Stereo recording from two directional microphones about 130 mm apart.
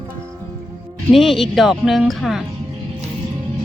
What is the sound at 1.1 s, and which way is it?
Speech, centre (ahead or behind).